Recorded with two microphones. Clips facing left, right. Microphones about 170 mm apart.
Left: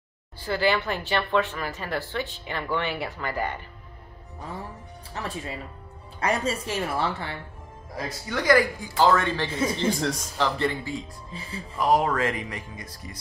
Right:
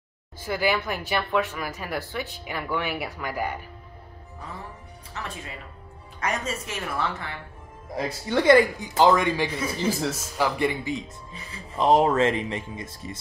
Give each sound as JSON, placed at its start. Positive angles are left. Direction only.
{"t": 0.5, "sound": "speech", "side_deg": -10}
{"t": 5.1, "sound": "speech", "side_deg": 35}
{"t": 7.9, "sound": "speech", "side_deg": -30}